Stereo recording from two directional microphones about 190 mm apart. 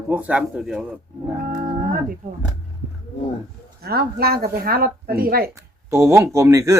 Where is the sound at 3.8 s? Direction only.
55° right (ahead or behind).